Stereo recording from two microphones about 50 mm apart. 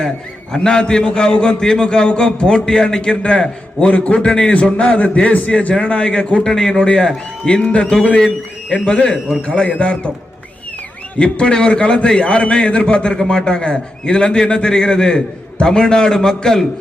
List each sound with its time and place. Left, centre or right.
0.5 s a man's voice: centre
9.2 s a man's voice: centre
9.6 s a man's voice: left
11.2 s a man's voice: left